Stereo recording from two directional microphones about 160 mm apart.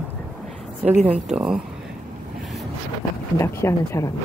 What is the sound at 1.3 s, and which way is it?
Speech, 5° right (ahead or behind).